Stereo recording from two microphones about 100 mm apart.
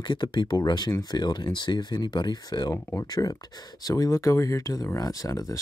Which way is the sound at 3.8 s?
35° left (ahead or behind).